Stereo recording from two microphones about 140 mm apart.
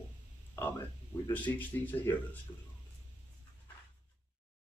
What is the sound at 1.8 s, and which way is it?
Speech, 15° left (ahead or behind).